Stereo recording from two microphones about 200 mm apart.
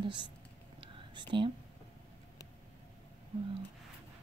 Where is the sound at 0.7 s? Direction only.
25° right (ahead or behind).